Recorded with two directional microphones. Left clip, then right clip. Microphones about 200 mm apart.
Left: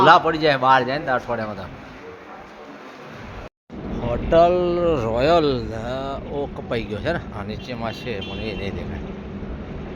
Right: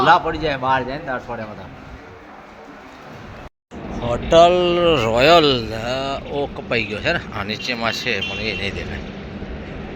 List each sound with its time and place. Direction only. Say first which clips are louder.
0.0 s a man's voice: left 1 dB; 10° left (ahead or behind)
3.9 s a man's voice: right 4 dB; centre (ahead or behind)